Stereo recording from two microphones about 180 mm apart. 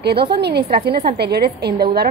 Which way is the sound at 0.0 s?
65° right (ahead or behind).